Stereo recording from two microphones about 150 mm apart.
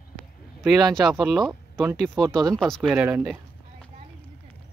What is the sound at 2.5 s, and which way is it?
Speech, 5° left (ahead or behind).